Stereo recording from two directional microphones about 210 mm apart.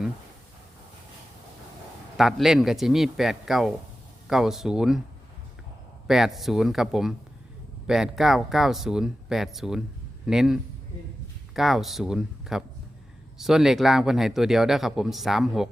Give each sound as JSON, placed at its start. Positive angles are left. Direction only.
{"t": 2.1, "sound": "speech", "side_deg": 0}
{"t": 6.1, "sound": "speech", "side_deg": 0}